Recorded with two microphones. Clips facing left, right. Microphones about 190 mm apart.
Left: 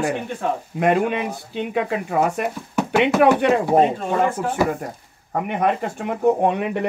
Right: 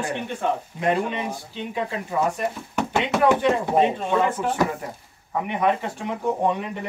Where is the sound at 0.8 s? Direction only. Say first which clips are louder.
Left 5 dB; 60° left (ahead or behind).